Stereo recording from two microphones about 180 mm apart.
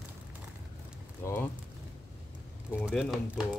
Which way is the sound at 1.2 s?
10° left (ahead or behind).